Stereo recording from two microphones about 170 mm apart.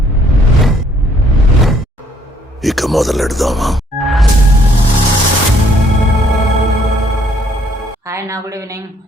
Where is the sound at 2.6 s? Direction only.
Centre (ahead or behind).